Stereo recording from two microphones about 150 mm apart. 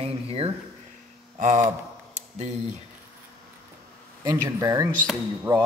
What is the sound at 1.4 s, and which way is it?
Speech, 60° right (ahead or behind).